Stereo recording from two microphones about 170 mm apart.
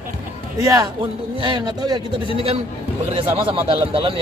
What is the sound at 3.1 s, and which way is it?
Speech, 30° right (ahead or behind).